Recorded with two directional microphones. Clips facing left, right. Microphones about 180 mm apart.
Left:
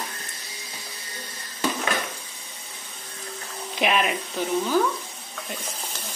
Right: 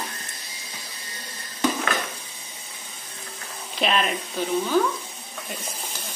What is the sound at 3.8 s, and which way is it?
Speech, 10° left (ahead or behind).